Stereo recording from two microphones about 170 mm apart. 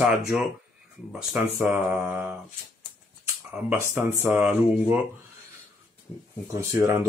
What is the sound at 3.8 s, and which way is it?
Speech, 10° right (ahead or behind).